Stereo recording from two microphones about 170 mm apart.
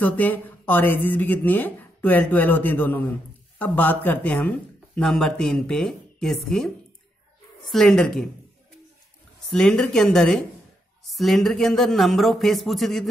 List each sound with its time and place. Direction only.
0.0 s speech: 10° left (ahead or behind)
7.7 s speech: 5° left (ahead or behind)
9.5 s speech: 5° left (ahead or behind)